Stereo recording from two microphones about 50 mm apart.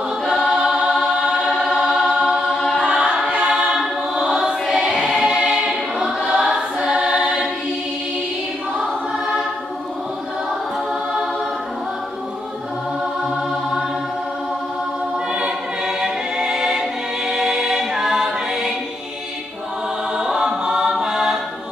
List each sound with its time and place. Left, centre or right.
0.3 s choir: centre
2.9 s choir: centre
15.1 s choir: centre
20.2 s choir: centre